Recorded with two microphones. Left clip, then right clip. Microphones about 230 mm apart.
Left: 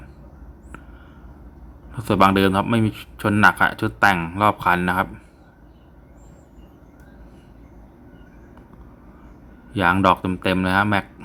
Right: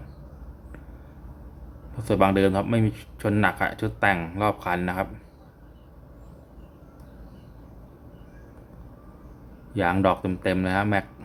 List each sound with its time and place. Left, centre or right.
2.0 s speech: centre
9.7 s speech: centre